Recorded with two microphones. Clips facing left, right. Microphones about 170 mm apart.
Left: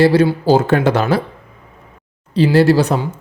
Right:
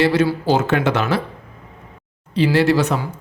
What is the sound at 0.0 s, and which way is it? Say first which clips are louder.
Speech: left 5 dB; 35° left (ahead or behind).